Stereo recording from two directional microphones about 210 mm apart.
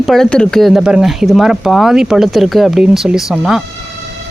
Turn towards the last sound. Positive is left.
turn(degrees=0)  # may be behind; listen again after turning